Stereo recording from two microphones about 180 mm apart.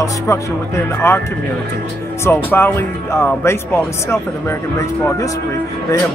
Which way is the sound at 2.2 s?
15° left (ahead or behind).